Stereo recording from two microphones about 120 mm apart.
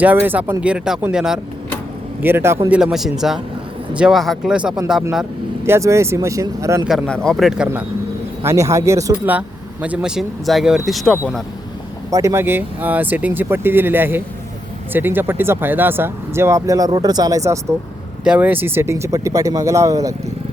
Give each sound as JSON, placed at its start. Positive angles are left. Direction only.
{"t": 0.0, "sound": "speech", "side_deg": -15}
{"t": 2.2, "sound": "speech", "side_deg": -20}
{"t": 2.6, "sound": "speech", "side_deg": -10}
{"t": 5.6, "sound": "speech", "side_deg": -20}
{"t": 6.8, "sound": "speech", "side_deg": 0}
{"t": 8.4, "sound": "speech", "side_deg": -25}
{"t": 9.8, "sound": "speech", "side_deg": -10}
{"t": 12.1, "sound": "speech", "side_deg": -25}
{"t": 18.2, "sound": "speech", "side_deg": -10}